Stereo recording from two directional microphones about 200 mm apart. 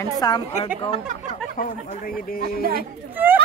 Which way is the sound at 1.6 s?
45° left (ahead or behind).